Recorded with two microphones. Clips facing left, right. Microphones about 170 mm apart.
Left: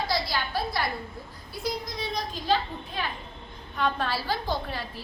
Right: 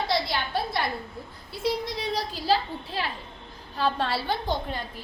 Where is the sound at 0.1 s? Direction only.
25° right (ahead or behind).